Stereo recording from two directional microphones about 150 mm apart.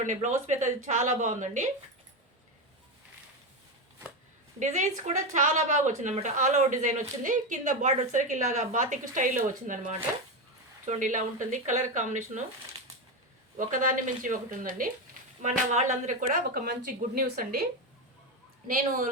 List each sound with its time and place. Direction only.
0.0 s speech: 55° right (ahead or behind)
4.6 s speech: 50° right (ahead or behind)
13.6 s speech: 60° right (ahead or behind)
15.4 s speech: 50° right (ahead or behind); by 17.7 s 80° right
18.7 s speech: 65° right (ahead or behind)